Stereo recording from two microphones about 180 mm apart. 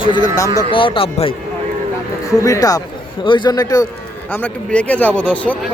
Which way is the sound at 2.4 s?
20° left (ahead or behind).